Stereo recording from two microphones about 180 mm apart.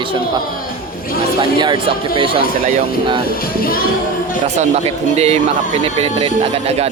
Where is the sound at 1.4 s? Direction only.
25° right (ahead or behind).